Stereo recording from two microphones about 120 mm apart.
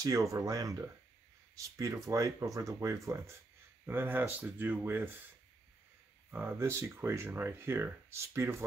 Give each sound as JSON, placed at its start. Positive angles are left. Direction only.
{"t": 0.0, "sound": "speech", "side_deg": -25}
{"t": 6.3, "sound": "speech", "side_deg": -20}